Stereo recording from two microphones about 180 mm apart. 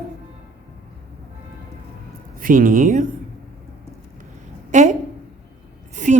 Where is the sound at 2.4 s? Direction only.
50° right (ahead or behind).